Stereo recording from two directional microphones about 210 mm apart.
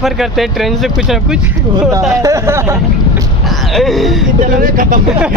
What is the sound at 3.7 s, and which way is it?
Speech, centre (ahead or behind).